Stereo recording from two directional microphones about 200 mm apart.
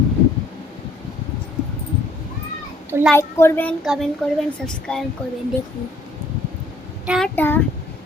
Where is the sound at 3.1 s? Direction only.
10° left (ahead or behind).